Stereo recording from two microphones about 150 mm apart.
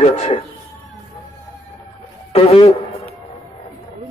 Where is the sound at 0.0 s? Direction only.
50° left (ahead or behind).